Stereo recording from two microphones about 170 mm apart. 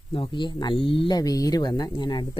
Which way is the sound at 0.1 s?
30° left (ahead or behind).